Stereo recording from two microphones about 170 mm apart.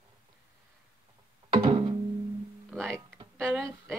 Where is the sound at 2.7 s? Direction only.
Centre (ahead or behind).